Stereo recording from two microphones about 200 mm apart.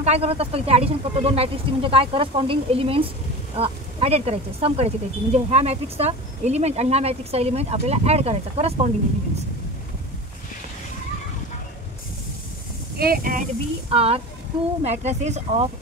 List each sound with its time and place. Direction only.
0.0 s speech: 30° right (ahead or behind)
12.9 s speech: 50° right (ahead or behind)
13.8 s speech: 30° right (ahead or behind)